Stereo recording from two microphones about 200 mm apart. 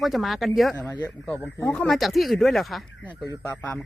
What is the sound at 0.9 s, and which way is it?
Speech, 20° left (ahead or behind).